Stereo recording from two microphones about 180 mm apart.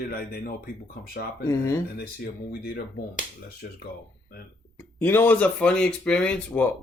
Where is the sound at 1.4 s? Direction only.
15° left (ahead or behind).